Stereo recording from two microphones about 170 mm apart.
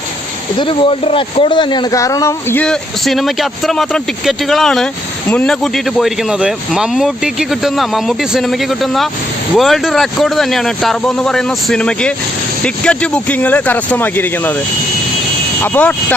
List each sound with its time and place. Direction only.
0.6 s speech: 30° left (ahead or behind); by 14.5 s 10° left (ahead or behind)
15.6 s speech: 10° left (ahead or behind)